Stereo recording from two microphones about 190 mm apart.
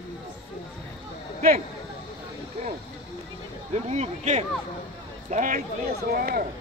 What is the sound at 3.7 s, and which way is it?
A man's voice, 35° right (ahead or behind).